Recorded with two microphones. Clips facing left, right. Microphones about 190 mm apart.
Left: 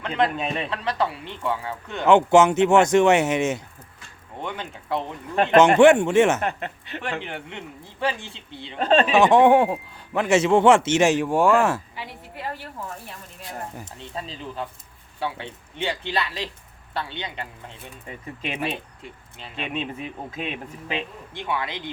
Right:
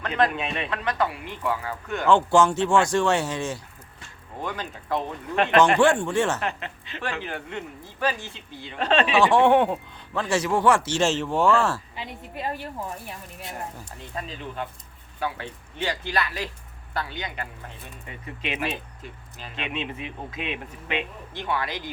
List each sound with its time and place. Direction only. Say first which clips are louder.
0.0 s a man's voice: even; 25° left (ahead or behind)
0.3 s speech: left 2 dB; 40° left (ahead or behind); by 6.4 s 20° left (ahead or behind)
6.4 s speech: left 3 dB; 50° left (ahead or behind)
7.2 s speech: right 1 dB; 20° left (ahead or behind)
10.2 s speech: left 6 dB; 20° left (ahead or behind)
11.9 s a woman's voice: right 2 dB; 20° right (ahead or behind)
13.7 s speech: left 1 dB; 25° left (ahead or behind)
19.6 s speech: left 2 dB; 40° left (ahead or behind)
21.5 s speech: even; 20° left (ahead or behind)